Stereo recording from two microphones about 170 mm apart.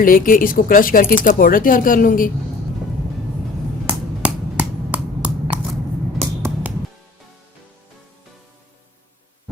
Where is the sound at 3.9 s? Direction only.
10° right (ahead or behind).